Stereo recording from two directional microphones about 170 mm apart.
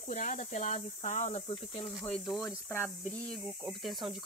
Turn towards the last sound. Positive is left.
turn(degrees=0)  # may be behind; listen again after turning